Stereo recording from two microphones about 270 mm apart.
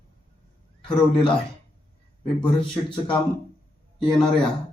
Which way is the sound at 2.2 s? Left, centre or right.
Centre.